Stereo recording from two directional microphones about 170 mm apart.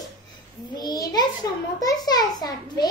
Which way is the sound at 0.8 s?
25° left (ahead or behind).